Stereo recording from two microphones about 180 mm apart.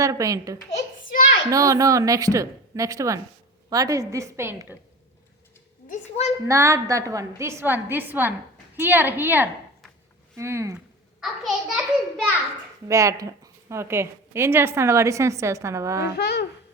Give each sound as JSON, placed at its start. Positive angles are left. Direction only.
{"t": 0.0, "sound": "a woman's voice", "side_deg": -20}
{"t": 5.9, "sound": "a woman's voice", "side_deg": 35}
{"t": 6.5, "sound": "a woman's voice", "side_deg": -15}
{"t": 11.2, "sound": "a child's voice", "side_deg": 0}
{"t": 12.9, "sound": "a woman's voice", "side_deg": -15}
{"t": 16.1, "sound": "speech", "side_deg": 65}